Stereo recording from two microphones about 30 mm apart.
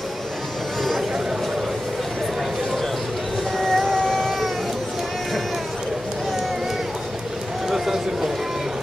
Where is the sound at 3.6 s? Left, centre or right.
Centre.